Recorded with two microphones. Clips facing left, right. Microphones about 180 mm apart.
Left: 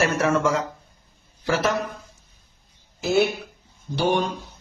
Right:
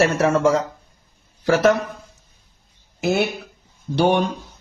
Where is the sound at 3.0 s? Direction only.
70° right (ahead or behind).